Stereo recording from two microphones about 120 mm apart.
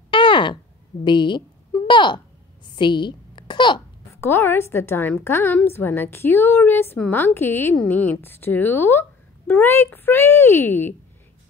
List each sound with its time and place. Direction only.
0.1 s a sound: 45° left (ahead or behind)
1.0 s a woman's voice: 40° left (ahead or behind)
4.1 s a woman's voice: 20° left (ahead or behind)